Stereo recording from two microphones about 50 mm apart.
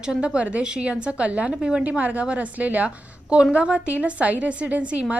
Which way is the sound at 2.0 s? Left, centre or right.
Right.